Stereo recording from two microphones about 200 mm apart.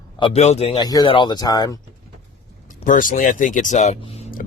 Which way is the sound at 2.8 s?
40° left (ahead or behind).